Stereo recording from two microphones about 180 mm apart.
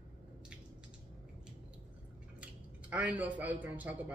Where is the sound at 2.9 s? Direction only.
10° right (ahead or behind).